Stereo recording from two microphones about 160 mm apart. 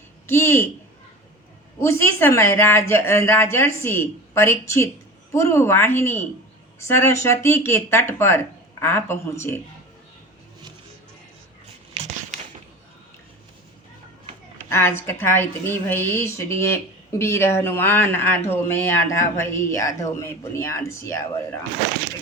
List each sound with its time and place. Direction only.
0.3 s a woman's voice: 15° left (ahead or behind)
1.8 s a woman's voice: 15° left (ahead or behind)
14.6 s a woman's voice: 15° left (ahead or behind)